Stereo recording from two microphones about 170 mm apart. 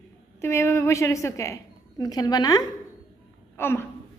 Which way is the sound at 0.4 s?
15° left (ahead or behind).